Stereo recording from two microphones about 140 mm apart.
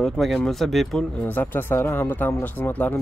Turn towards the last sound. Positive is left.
turn(degrees=10)  # may be behind; listen again after turning